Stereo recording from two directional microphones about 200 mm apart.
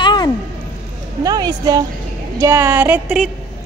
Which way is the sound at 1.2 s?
20° right (ahead or behind).